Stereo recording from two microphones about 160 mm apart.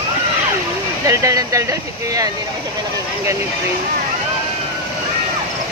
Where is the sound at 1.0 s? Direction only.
20° right (ahead or behind).